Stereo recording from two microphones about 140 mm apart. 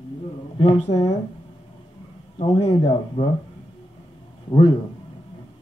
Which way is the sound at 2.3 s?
45° left (ahead or behind).